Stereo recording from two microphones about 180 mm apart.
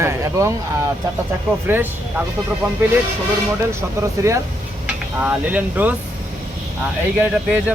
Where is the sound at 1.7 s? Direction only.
10° right (ahead or behind).